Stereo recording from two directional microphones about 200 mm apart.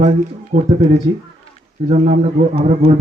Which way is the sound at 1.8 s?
30° right (ahead or behind).